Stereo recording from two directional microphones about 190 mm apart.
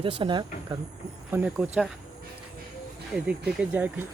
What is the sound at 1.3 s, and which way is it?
Speech, 5° right (ahead or behind).